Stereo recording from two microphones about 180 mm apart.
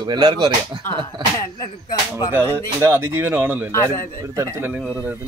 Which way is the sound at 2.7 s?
15° right (ahead or behind).